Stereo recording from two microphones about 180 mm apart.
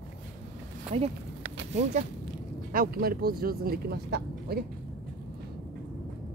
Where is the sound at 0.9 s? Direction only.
35° right (ahead or behind).